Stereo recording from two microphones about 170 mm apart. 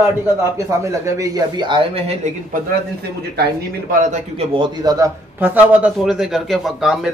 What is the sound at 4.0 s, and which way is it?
Speech, 45° right (ahead or behind).